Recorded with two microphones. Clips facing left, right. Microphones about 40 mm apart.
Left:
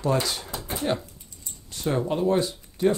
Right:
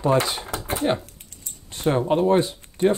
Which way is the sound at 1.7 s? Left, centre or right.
Right.